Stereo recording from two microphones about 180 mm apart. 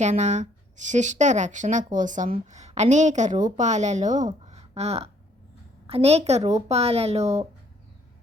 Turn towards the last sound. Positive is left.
turn(degrees=-35)  # may be behind; listen again after turning